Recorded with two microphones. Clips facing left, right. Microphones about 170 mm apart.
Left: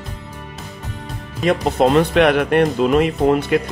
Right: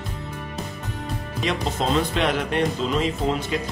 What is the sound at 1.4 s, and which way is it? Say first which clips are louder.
Speech: left 10 dB; 55° left (ahead or behind).